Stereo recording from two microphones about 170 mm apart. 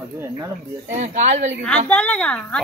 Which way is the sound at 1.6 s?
5° left (ahead or behind).